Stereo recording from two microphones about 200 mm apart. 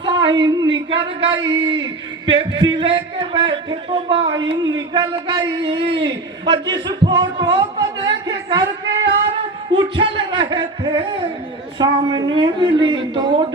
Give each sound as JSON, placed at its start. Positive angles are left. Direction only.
{"t": 0.0, "sound": "a sound", "side_deg": -25}
{"t": 2.4, "sound": "a man's voice", "side_deg": -20}
{"t": 9.7, "sound": "a man's voice", "side_deg": -25}